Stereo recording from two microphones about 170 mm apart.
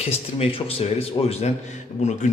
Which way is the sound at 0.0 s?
35° left (ahead or behind).